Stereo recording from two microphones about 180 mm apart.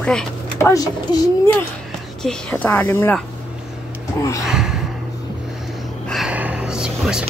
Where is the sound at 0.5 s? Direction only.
15° left (ahead or behind).